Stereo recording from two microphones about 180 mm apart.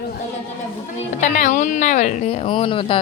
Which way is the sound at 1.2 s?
45° left (ahead or behind).